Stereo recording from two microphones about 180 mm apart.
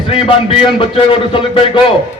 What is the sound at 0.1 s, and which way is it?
A man's voice, 30° left (ahead or behind).